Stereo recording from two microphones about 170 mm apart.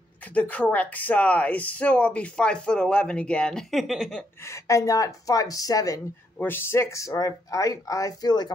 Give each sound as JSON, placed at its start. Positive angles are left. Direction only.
{"t": 0.3, "sound": "speech", "side_deg": 10}
{"t": 4.5, "sound": "speech", "side_deg": 20}